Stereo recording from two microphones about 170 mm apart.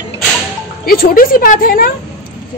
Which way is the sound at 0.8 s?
60° left (ahead or behind).